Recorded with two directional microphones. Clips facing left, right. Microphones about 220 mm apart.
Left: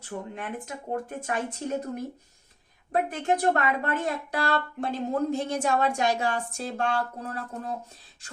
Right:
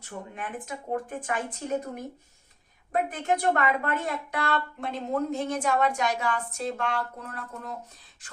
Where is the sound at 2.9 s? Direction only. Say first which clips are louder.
Left 1 dB; 35° left (ahead or behind).